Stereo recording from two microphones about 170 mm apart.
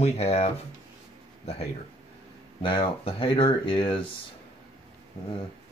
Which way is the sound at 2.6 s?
30° left (ahead or behind).